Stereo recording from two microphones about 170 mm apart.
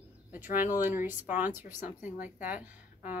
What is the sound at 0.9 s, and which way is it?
Speech, 10° right (ahead or behind).